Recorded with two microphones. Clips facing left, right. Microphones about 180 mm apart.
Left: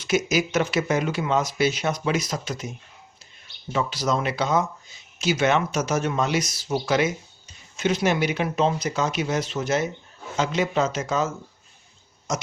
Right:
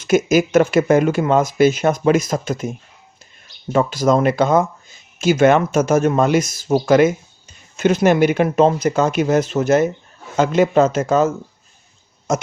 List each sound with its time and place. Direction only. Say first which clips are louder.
0.0 s speech: right 8 dB; 50° right (ahead or behind)